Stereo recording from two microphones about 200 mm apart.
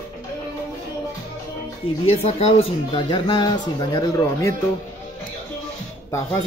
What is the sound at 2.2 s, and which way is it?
Speech, 30° left (ahead or behind).